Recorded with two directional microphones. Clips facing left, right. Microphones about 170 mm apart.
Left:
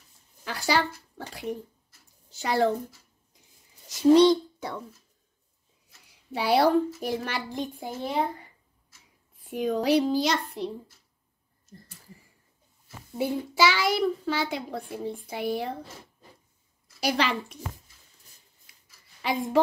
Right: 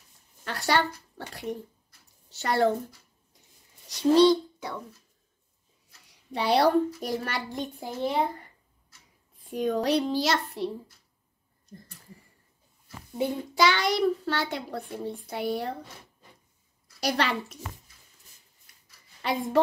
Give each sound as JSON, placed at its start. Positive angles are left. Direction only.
{"t": 0.5, "sound": "a woman's voice", "side_deg": 0}
{"t": 3.3, "sound": "a sound", "side_deg": 0}
{"t": 4.1, "sound": "speech", "side_deg": 20}
{"t": 5.9, "sound": "a woman's voice", "side_deg": 0}
{"t": 9.5, "sound": "a woman's voice", "side_deg": 0}
{"t": 13.2, "sound": "a woman's voice", "side_deg": 5}
{"t": 17.0, "sound": "a woman's voice", "side_deg": 0}
{"t": 19.2, "sound": "a woman's voice", "side_deg": 0}